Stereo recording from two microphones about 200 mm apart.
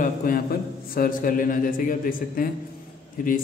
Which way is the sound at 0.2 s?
45° left (ahead or behind).